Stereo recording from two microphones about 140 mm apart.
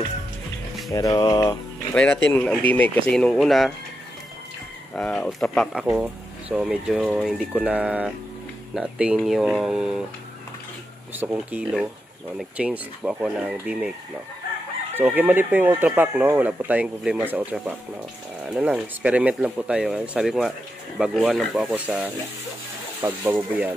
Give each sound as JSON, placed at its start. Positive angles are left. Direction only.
{"t": 0.9, "sound": "speech", "side_deg": 25}
{"t": 2.0, "sound": "speech", "side_deg": 10}
{"t": 4.9, "sound": "speech", "side_deg": 5}
{"t": 11.1, "sound": "speech", "side_deg": -10}
{"t": 15.0, "sound": "speech", "side_deg": -15}